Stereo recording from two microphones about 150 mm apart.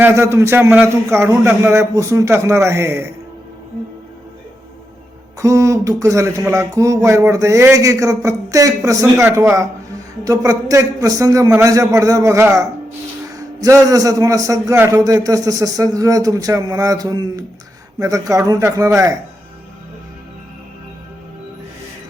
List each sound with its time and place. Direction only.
0.0 s a man's voice: 15° right (ahead or behind)
5.4 s a man's voice: 20° right (ahead or behind)